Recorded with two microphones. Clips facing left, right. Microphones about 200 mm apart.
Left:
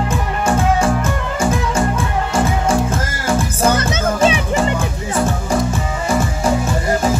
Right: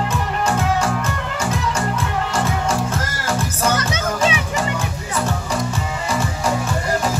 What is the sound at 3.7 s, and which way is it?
Music, 30° left (ahead or behind).